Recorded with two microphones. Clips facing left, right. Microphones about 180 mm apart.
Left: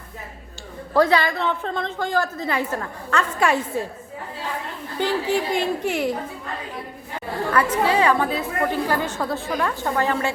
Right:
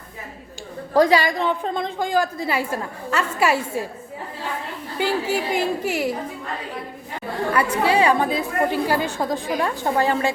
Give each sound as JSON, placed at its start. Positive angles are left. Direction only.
{"t": 0.9, "sound": "a woman's voice", "side_deg": -15}
{"t": 4.9, "sound": "a woman's voice", "side_deg": -10}
{"t": 7.5, "sound": "a woman's voice", "side_deg": -15}
{"t": 9.6, "sound": "a woman's voice", "side_deg": -30}